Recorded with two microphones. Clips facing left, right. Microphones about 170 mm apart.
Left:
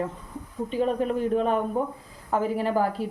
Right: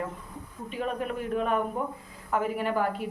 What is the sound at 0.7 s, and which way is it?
Speech, 30° left (ahead or behind).